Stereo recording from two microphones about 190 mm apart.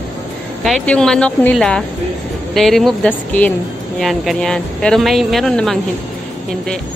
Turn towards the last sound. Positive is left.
turn(degrees=0)  # may be behind; listen again after turning